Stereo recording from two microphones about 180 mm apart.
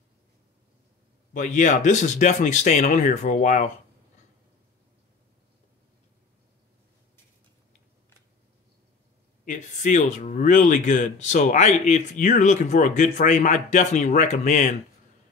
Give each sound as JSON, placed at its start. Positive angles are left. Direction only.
{"t": 1.3, "sound": "speech", "side_deg": 45}
{"t": 9.4, "sound": "speech", "side_deg": 45}